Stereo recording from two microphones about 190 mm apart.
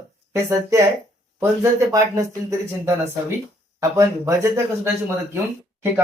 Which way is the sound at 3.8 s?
15° right (ahead or behind).